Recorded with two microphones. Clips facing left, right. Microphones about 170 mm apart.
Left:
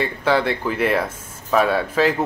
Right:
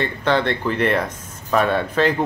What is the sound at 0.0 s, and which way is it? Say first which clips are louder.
Speech: even; 5° left (ahead or behind).